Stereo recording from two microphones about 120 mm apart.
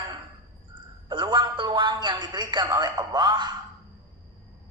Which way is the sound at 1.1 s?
40° right (ahead or behind).